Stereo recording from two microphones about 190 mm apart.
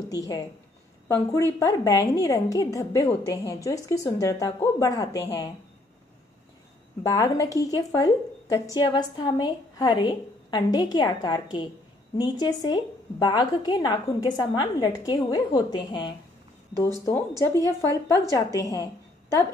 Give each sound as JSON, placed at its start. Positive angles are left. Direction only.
{"t": 0.1, "sound": "a woman's voice", "side_deg": 20}
{"t": 7.0, "sound": "a woman's voice", "side_deg": 15}
{"t": 17.4, "sound": "a woman's voice", "side_deg": 15}